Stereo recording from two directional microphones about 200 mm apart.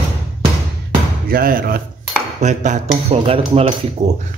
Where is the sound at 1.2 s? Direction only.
45° right (ahead or behind).